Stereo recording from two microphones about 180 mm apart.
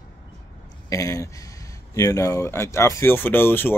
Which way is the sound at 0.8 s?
20° left (ahead or behind).